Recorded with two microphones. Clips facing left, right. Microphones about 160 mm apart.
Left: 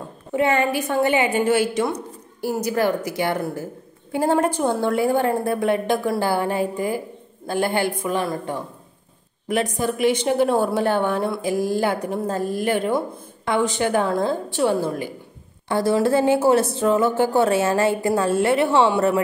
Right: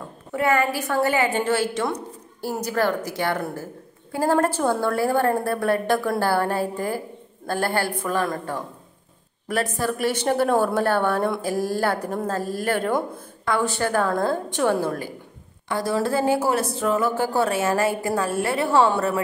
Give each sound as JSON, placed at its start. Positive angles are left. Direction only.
{"t": 0.3, "sound": "a woman's voice", "side_deg": 25}
{"t": 15.7, "sound": "speech", "side_deg": 25}